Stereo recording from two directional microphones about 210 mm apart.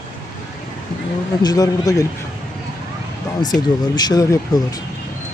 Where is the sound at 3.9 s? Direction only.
20° left (ahead or behind).